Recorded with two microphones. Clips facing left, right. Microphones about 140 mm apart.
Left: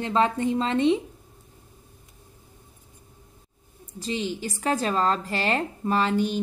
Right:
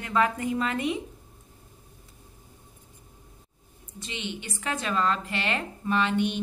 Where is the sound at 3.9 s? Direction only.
35° left (ahead or behind).